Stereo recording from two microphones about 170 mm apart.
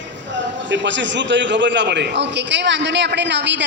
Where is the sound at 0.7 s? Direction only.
90° right.